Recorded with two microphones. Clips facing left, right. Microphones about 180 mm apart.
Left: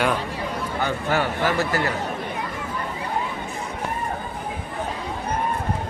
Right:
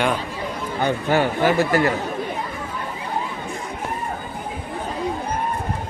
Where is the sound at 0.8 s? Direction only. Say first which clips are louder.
Right 5 dB; 20° right (ahead or behind).